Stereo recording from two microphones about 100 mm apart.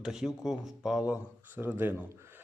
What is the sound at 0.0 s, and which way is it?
Speech, 5° right (ahead or behind).